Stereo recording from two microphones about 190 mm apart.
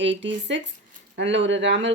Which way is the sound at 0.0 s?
70° right (ahead or behind).